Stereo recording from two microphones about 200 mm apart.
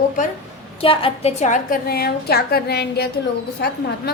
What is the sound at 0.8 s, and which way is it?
A woman's voice, 30° left (ahead or behind).